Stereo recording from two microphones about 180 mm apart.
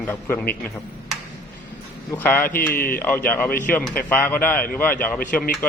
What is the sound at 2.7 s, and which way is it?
Speech, 55° left (ahead or behind).